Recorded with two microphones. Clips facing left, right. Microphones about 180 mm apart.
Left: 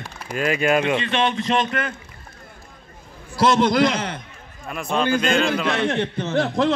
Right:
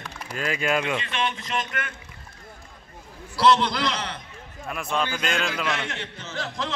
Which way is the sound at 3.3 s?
45° left (ahead or behind).